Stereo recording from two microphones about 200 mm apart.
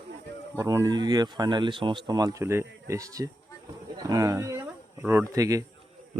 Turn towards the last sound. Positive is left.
turn(degrees=-15)  # may be behind; listen again after turning